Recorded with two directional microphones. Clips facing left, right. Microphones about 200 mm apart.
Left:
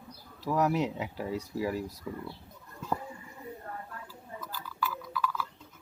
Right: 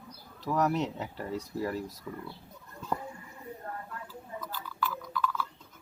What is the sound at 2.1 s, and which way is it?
Speech, 20° left (ahead or behind).